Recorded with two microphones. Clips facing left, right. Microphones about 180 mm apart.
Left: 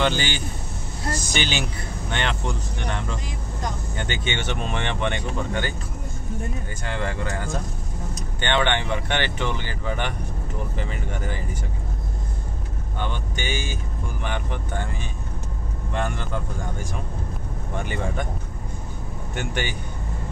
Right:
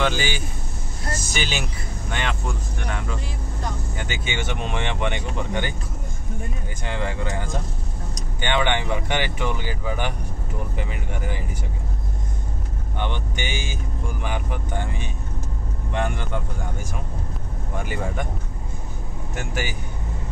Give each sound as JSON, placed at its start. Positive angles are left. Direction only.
{"t": 0.0, "sound": "speech", "side_deg": -5}
{"t": 6.8, "sound": "speech", "side_deg": -15}
{"t": 13.0, "sound": "speech", "side_deg": -15}
{"t": 15.9, "sound": "speech", "side_deg": -15}
{"t": 17.7, "sound": "speech", "side_deg": -5}
{"t": 19.3, "sound": "speech", "side_deg": -5}